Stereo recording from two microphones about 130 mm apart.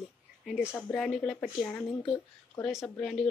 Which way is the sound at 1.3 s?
15° left (ahead or behind).